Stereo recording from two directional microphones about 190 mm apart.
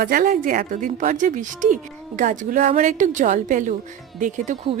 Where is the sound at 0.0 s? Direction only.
45° right (ahead or behind).